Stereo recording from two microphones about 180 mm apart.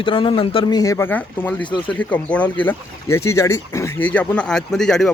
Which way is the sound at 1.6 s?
25° left (ahead or behind).